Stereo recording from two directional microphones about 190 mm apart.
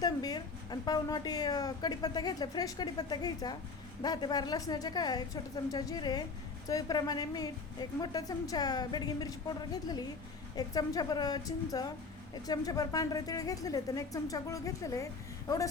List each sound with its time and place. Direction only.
0.0 s a woman's voice: 20° left (ahead or behind)